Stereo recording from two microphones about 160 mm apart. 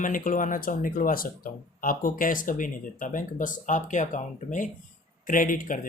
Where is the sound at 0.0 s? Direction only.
55° left (ahead or behind).